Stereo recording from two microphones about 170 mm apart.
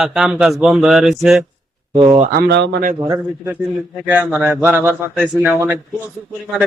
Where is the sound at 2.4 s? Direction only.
85° right.